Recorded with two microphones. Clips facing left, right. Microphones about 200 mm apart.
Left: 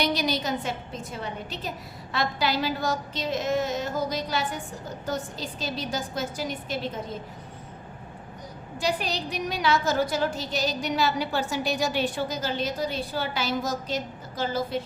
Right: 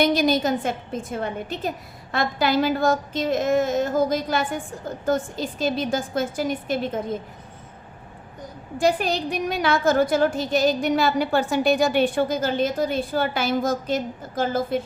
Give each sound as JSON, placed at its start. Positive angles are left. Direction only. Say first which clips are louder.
{"t": 0.0, "sound": "a woman's voice", "louder": "right 7 dB", "side_deg": -50}
{"t": 8.8, "sound": "a woman's voice", "louder": "right 7 dB", "side_deg": -50}